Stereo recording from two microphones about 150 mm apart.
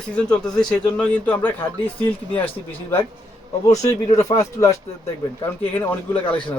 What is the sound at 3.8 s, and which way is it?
Speech, 25° left (ahead or behind).